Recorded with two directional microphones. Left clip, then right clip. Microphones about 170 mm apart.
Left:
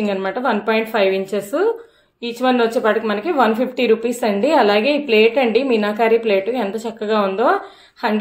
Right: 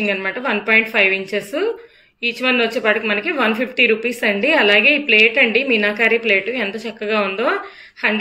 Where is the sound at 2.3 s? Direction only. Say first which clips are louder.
Left 2 dB; 35° left (ahead or behind).